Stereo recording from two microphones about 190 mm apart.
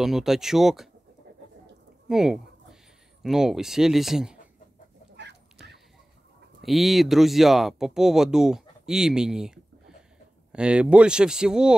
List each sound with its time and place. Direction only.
0.0 s speech: centre (ahead or behind)
2.0 s speech: 5° right (ahead or behind)
5.1 s chicken: 60° right (ahead or behind)
6.6 s speech: centre (ahead or behind)